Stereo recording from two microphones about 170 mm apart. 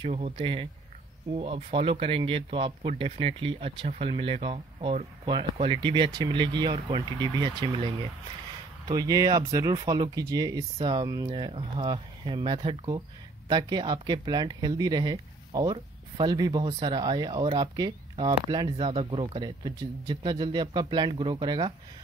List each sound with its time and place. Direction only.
0.4 s speech: 30° right (ahead or behind)